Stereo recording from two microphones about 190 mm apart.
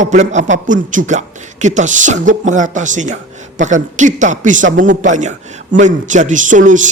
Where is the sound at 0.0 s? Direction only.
40° right (ahead or behind).